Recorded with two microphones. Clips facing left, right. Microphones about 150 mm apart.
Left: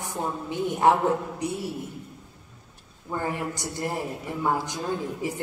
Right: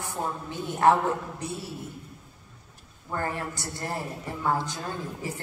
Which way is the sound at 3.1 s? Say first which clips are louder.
Left 2 dB; 15° left (ahead or behind).